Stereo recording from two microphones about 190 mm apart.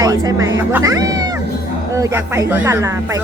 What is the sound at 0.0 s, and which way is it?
Speech, 20° right (ahead or behind).